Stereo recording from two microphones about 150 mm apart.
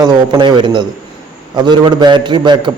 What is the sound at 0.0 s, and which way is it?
A man's voice, 30° right (ahead or behind).